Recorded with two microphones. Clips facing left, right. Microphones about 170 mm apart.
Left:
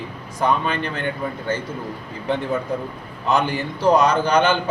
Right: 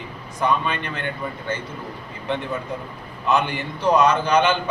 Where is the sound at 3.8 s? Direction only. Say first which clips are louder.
Left 1 dB; 40° left (ahead or behind).